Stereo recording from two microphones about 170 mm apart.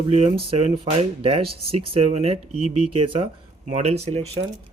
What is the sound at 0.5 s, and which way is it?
Speech, 35° right (ahead or behind).